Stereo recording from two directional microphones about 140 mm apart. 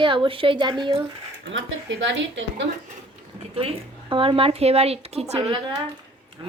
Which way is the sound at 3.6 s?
40° right (ahead or behind).